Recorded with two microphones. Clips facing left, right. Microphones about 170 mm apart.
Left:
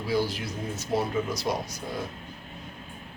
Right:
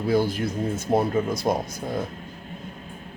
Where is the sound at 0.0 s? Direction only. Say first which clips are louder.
Right 5 dB; 50° right (ahead or behind).